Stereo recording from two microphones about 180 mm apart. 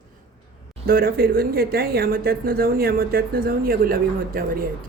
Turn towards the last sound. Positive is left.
turn(degrees=-55)  # may be behind; listen again after turning